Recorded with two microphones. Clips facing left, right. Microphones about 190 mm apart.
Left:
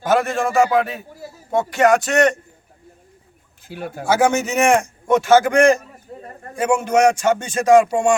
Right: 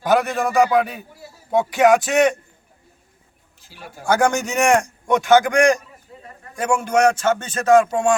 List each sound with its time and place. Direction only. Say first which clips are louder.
0.0 s a man's voice: even; centre (ahead or behind)
3.6 s speech: left 10 dB; 55° left (ahead or behind)
4.0 s a man's voice: left 1 dB; 5° left (ahead or behind)
6.1 s a sound: left 8 dB; 45° left (ahead or behind)
6.6 s speech: left 2 dB; 5° left (ahead or behind)